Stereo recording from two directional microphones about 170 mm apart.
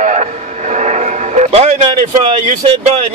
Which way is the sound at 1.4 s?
45° right (ahead or behind).